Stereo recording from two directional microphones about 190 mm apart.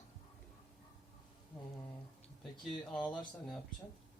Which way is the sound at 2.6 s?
Centre (ahead or behind).